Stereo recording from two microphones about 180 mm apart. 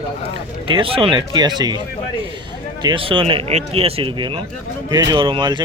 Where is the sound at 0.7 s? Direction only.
30° right (ahead or behind).